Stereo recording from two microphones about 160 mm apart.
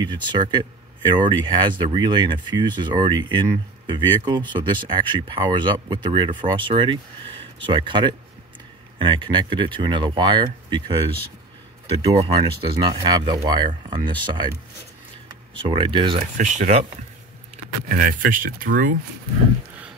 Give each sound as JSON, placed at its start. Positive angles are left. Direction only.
{"t": 0.0, "sound": "speech", "side_deg": -30}
{"t": 12.0, "sound": "speech", "side_deg": -35}
{"t": 15.6, "sound": "speech", "side_deg": -35}
{"t": 16.2, "sound": "speech", "side_deg": -50}
{"t": 17.8, "sound": "speech", "side_deg": -60}